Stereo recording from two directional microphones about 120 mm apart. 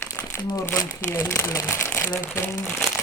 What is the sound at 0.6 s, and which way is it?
Speech, 15° left (ahead or behind).